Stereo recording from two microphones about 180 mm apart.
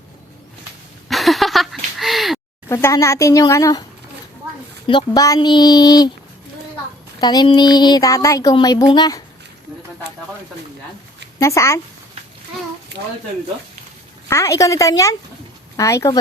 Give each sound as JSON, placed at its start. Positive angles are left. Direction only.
{"t": 1.0, "sound": "a sound", "side_deg": 0}
{"t": 2.6, "sound": "speech", "side_deg": 15}
{"t": 4.9, "sound": "speech", "side_deg": 25}
{"t": 7.2, "sound": "speech", "side_deg": 25}
{"t": 11.3, "sound": "speech", "side_deg": 15}
{"t": 14.3, "sound": "speech", "side_deg": 15}